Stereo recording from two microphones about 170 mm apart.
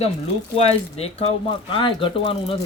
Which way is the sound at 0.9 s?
35° left (ahead or behind).